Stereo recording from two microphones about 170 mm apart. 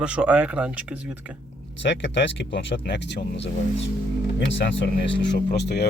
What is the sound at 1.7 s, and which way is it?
Speech, 90° left.